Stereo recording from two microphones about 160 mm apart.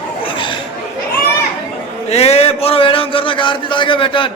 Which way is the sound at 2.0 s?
40° left (ahead or behind).